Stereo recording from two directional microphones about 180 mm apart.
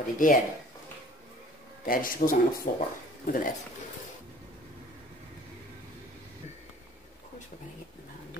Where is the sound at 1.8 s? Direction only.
50° left (ahead or behind).